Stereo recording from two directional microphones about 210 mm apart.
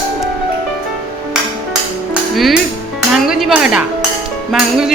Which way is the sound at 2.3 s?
Centre (ahead or behind).